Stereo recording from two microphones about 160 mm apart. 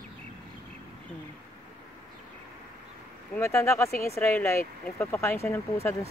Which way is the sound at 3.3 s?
15° left (ahead or behind).